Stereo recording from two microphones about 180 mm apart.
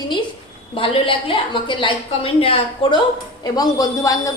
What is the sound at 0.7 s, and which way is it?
A woman's voice, 30° left (ahead or behind).